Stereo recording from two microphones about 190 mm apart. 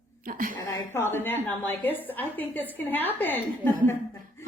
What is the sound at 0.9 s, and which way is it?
Speech, 10° left (ahead or behind).